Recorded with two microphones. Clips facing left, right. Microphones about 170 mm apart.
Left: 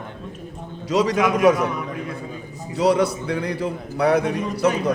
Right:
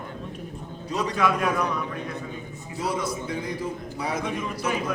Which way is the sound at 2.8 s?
70° left (ahead or behind).